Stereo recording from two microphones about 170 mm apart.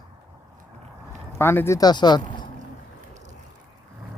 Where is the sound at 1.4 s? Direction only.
15° left (ahead or behind).